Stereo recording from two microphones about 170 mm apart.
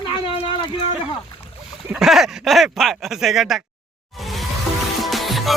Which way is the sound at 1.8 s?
5° right (ahead or behind).